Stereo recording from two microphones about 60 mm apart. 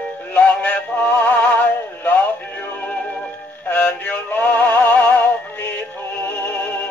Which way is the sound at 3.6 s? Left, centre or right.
Left.